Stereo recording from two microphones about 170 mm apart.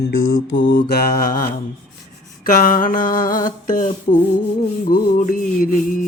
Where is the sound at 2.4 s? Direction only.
55° left (ahead or behind).